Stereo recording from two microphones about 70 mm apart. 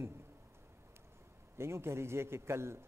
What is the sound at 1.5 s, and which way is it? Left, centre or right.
A man's voice, right.